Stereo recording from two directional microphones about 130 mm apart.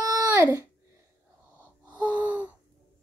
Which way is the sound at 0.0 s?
25° right (ahead or behind).